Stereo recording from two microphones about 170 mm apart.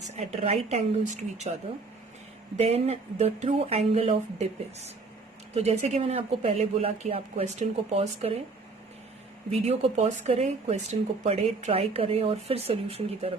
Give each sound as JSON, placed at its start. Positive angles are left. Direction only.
{"t": 0.2, "sound": "speech", "side_deg": -40}
{"t": 2.6, "sound": "speech", "side_deg": -40}
{"t": 9.5, "sound": "speech", "side_deg": -40}